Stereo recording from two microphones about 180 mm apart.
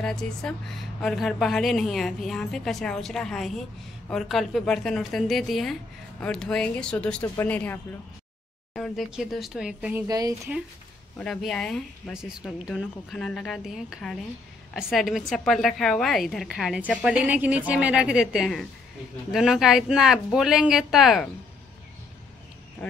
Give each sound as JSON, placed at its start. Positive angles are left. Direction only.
{"t": 0.0, "sound": "a woman's voice", "side_deg": 5}
{"t": 10.0, "sound": "speech", "side_deg": -20}
{"t": 11.1, "sound": "a woman's voice", "side_deg": 5}